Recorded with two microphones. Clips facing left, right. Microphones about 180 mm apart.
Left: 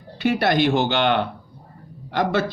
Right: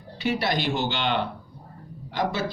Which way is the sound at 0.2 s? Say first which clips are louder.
Left 7 dB; 55° left (ahead or behind).